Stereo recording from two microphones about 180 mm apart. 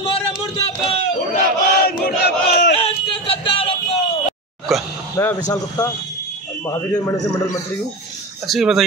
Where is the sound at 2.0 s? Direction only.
60° left (ahead or behind).